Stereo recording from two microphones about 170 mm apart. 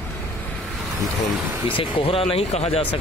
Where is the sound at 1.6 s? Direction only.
30° left (ahead or behind).